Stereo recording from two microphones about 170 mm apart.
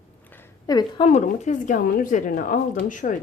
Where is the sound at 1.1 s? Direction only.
45° left (ahead or behind).